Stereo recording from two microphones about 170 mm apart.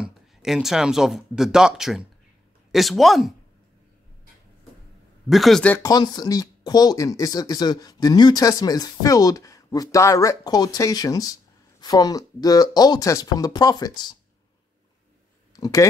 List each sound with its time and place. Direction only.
0.0 s a woman's voice: centre (ahead or behind)
5.3 s a woman's voice: centre (ahead or behind)
5.8 s speech: 25° left (ahead or behind)
15.5 s speech: 20° left (ahead or behind)